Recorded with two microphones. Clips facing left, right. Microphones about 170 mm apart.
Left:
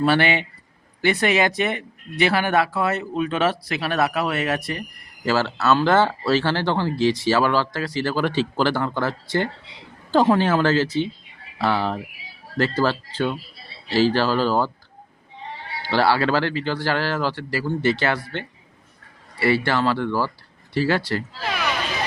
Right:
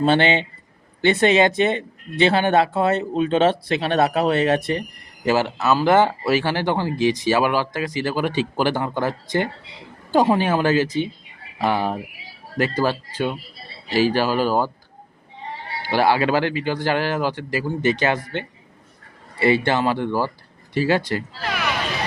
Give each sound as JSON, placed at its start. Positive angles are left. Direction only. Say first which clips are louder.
{"t": 0.0, "sound": "speech", "louder": "right 2 dB", "side_deg": -25}
{"t": 15.8, "sound": "speech", "louder": "right 1 dB", "side_deg": -15}